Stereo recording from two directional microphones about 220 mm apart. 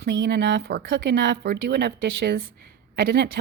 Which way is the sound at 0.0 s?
50° right (ahead or behind).